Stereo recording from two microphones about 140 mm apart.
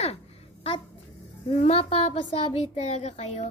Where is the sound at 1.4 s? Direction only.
50° left (ahead or behind).